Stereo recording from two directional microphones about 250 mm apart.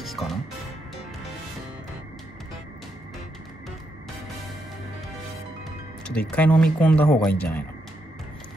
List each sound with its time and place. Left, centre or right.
0.0 s music: centre
6.1 s speech: centre